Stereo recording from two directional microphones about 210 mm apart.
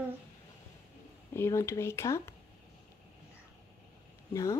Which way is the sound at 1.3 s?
10° left (ahead or behind).